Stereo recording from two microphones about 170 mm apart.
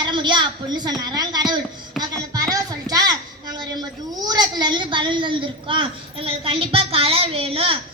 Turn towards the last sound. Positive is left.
turn(degrees=-35)  # may be behind; listen again after turning